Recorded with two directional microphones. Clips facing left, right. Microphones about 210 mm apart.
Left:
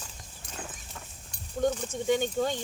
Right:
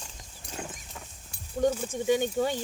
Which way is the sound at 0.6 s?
10° right (ahead or behind).